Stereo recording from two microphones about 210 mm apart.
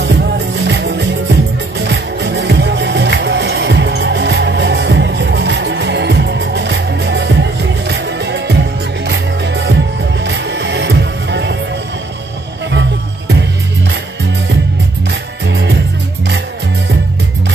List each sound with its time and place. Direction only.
0.0 s music: 55° right (ahead or behind)
15.4 s music: 55° right (ahead or behind)